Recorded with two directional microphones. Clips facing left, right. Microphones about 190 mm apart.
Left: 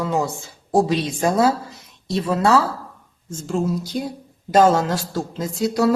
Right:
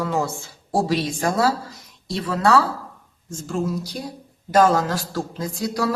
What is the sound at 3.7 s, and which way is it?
Speech, 25° left (ahead or behind).